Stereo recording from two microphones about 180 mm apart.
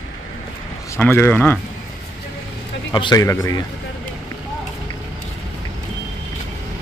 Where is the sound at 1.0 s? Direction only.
10° left (ahead or behind).